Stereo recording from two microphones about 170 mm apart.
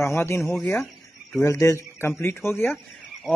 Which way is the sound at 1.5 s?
15° left (ahead or behind).